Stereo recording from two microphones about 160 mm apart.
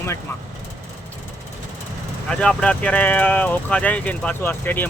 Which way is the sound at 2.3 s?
5° left (ahead or behind).